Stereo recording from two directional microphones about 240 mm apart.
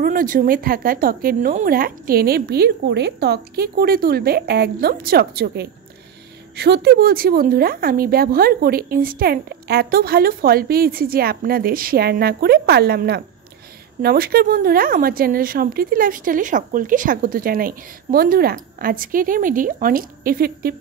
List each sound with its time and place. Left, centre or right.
0.0 s speech: right